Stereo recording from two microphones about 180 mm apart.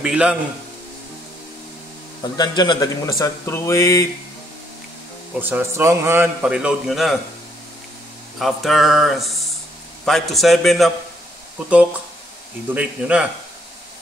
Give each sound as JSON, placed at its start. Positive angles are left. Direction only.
{"t": 0.0, "sound": "speech", "side_deg": -5}
{"t": 2.3, "sound": "speech", "side_deg": 25}
{"t": 5.4, "sound": "a man's voice", "side_deg": -10}
{"t": 8.4, "sound": "speech", "side_deg": 0}
{"t": 12.7, "sound": "speech", "side_deg": -5}